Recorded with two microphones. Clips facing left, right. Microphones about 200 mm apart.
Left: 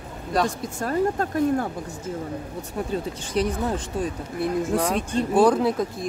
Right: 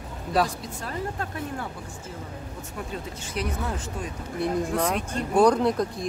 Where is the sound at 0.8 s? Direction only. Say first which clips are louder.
Left 10 dB; 45° left (ahead or behind).